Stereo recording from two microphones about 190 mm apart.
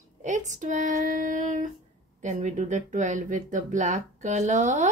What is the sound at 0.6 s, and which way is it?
Child singing, 40° right (ahead or behind).